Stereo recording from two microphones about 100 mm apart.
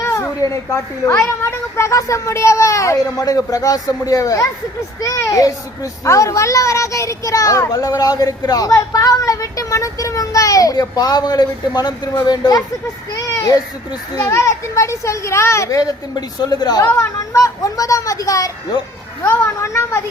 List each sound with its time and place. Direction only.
0.0 s a child's voice: 30° left (ahead or behind)
16.4 s a woman's voice: 45° left (ahead or behind)
17.0 s speech: 30° left (ahead or behind)